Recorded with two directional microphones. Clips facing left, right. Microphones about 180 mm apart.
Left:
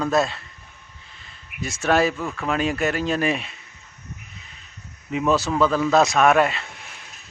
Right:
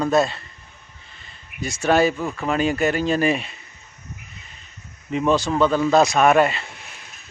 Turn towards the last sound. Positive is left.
turn(degrees=0)  # may be behind; listen again after turning